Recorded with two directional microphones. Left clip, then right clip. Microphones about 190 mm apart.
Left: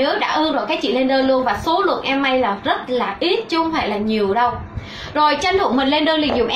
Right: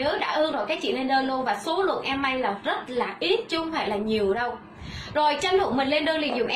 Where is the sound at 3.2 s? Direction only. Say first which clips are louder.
Left 5 dB; 15° right (ahead or behind).